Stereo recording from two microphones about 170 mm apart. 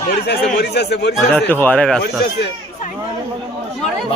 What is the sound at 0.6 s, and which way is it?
Speech, 80° left.